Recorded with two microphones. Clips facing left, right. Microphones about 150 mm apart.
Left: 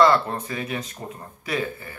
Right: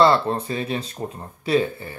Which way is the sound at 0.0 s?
30° right (ahead or behind).